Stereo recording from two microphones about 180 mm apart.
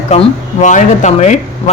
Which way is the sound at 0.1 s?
35° left (ahead or behind).